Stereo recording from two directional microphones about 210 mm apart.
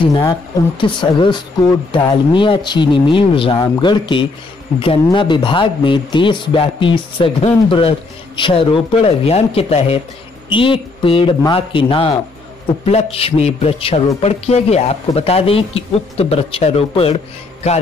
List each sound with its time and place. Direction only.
0.0 s speech: 20° left (ahead or behind)
17.6 s music: 30° left (ahead or behind)